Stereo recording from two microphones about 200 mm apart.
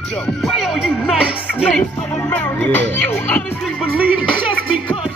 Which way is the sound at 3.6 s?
5° right (ahead or behind).